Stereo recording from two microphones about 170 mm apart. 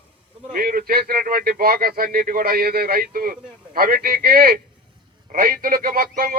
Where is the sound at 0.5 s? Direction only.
60° right (ahead or behind).